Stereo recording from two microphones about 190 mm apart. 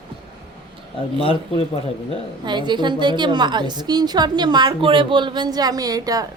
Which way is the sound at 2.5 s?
25° right (ahead or behind).